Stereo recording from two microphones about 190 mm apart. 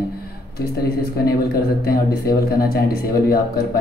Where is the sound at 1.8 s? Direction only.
55° left (ahead or behind).